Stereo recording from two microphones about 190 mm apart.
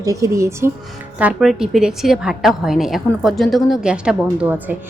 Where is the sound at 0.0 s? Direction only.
15° right (ahead or behind).